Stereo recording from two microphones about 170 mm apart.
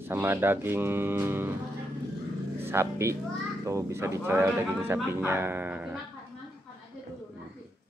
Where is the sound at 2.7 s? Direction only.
15° right (ahead or behind).